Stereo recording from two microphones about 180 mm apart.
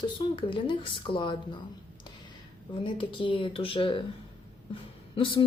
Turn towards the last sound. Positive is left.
turn(degrees=30)  # may be behind; listen again after turning